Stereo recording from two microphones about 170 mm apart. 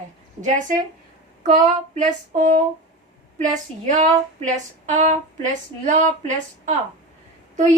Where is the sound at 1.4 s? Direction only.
50° right (ahead or behind).